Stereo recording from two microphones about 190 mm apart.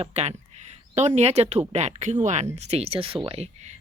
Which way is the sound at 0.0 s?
35° right (ahead or behind).